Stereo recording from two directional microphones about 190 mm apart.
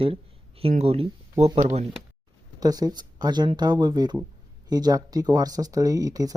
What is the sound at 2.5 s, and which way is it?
Speech, 20° right (ahead or behind).